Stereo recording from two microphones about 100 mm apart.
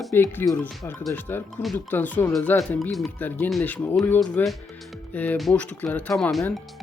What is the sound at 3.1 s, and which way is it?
Speech, 20° left (ahead or behind).